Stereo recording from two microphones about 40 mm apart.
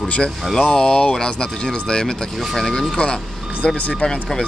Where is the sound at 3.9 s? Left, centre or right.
Centre.